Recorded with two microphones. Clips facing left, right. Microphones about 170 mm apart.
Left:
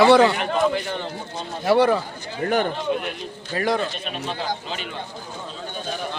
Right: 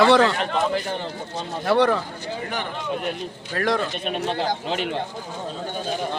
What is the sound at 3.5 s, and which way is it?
Speech, centre (ahead or behind).